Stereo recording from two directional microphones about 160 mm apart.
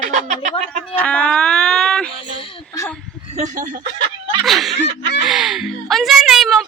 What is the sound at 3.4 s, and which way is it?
Speech, 55° right (ahead or behind).